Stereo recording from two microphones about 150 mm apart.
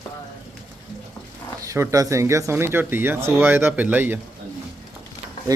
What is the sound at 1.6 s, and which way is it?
Speech, 20° right (ahead or behind).